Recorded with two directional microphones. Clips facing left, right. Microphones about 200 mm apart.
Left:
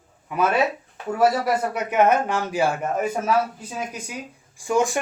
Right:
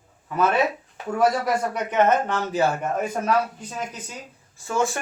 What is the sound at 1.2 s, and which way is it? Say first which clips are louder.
A man's voice: left 1 dB; 10° left (ahead or behind).